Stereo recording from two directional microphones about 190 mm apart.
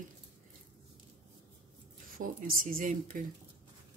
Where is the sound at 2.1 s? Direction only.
50° right (ahead or behind).